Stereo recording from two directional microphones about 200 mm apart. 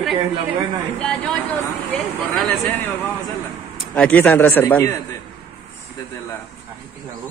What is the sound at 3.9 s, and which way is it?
A man's voice, 10° left (ahead or behind).